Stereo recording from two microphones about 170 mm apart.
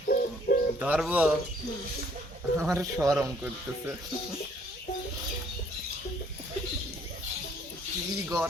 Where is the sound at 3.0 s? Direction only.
15° right (ahead or behind).